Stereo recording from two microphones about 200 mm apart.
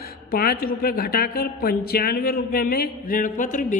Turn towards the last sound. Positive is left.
turn(degrees=40)  # may be behind; listen again after turning